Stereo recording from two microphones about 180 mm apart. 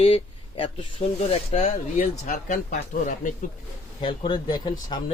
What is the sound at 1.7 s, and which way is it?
Speech, 50° left (ahead or behind).